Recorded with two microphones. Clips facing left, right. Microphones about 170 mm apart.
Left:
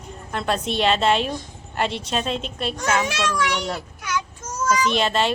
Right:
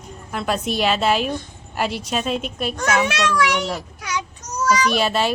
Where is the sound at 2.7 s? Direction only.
65° right (ahead or behind).